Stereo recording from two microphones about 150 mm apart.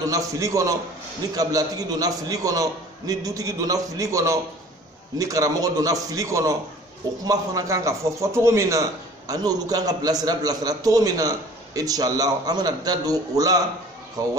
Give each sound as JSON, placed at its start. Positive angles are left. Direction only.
{"t": 0.0, "sound": "a man's voice", "side_deg": -20}